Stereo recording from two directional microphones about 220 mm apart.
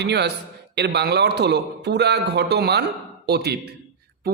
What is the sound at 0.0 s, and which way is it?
A man's voice, 50° right (ahead or behind).